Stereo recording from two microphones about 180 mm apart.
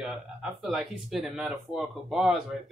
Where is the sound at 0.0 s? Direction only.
5° right (ahead or behind).